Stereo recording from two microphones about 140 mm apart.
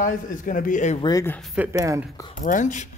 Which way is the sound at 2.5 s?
65° left (ahead or behind).